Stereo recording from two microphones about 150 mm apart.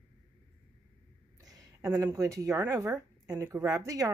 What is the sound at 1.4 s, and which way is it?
A woman's voice, 25° right (ahead or behind).